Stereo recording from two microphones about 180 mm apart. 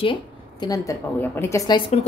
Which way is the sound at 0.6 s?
20° left (ahead or behind).